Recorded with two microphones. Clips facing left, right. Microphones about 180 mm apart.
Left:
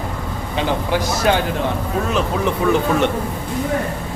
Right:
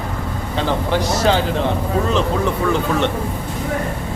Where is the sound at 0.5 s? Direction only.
10° left (ahead or behind).